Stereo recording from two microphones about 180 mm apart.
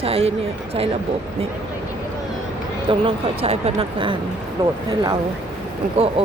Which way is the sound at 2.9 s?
30° right (ahead or behind).